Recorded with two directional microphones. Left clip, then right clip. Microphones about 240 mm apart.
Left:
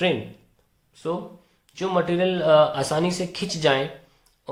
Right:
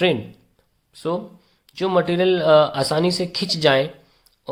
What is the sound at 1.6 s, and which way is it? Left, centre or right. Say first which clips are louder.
Speech: right 4 dB; right.